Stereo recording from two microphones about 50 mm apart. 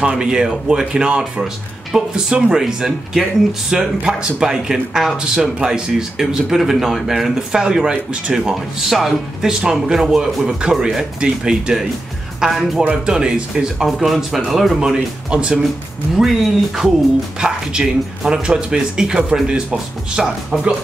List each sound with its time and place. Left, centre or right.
0.0 s speech: centre
8.8 s speech: centre
12.4 s speech: centre
12.9 s speech: centre
13.8 s speech: centre
14.8 s speech: centre
17.4 s speech: centre